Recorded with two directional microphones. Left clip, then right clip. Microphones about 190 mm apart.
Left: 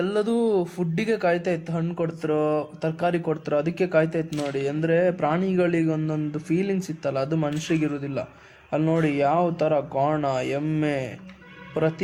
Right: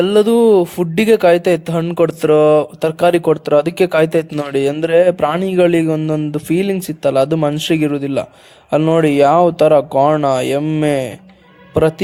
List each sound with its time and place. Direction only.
0.0 s a man's voice: 40° right (ahead or behind)